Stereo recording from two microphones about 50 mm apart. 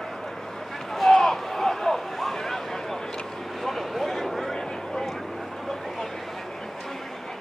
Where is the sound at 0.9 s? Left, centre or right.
Centre.